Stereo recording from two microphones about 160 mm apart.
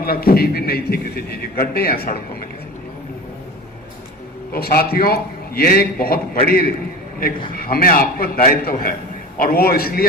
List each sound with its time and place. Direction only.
0.0 s a man's voice: 70° left (ahead or behind)
4.5 s a man's voice: 75° left (ahead or behind)